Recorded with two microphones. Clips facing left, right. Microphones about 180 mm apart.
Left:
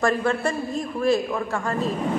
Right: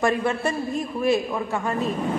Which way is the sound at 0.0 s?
20° right (ahead or behind).